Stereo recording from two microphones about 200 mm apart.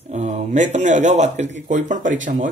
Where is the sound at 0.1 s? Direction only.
35° right (ahead or behind).